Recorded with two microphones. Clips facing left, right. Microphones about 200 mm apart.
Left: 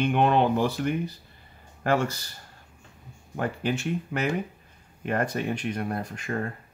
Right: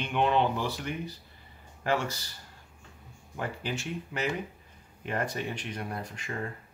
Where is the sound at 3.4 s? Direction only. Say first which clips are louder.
Left 7 dB; 55° left (ahead or behind).